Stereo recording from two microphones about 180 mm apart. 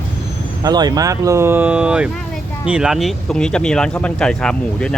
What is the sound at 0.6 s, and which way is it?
Speech, 20° right (ahead or behind).